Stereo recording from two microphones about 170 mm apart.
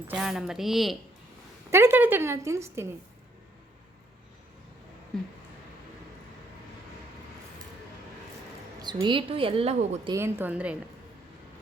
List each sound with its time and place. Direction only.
0.1 s a woman's voice: 5° right (ahead or behind)
1.7 s speech: 15° right (ahead or behind)
8.8 s speech: 25° right (ahead or behind)
10.1 s speech: 15° right (ahead or behind)